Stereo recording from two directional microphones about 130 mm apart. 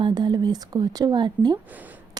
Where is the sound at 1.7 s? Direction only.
10° right (ahead or behind).